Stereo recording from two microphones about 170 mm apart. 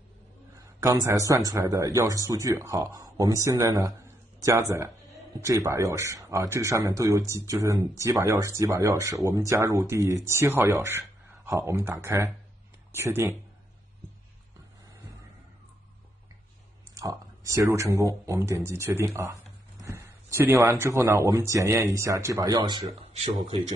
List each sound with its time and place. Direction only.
0.7 s speech: 15° right (ahead or behind)
16.9 s speech: 20° right (ahead or behind)
23.1 s speech: 35° right (ahead or behind)